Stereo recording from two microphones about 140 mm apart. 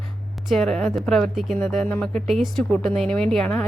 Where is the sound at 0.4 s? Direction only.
Centre (ahead or behind).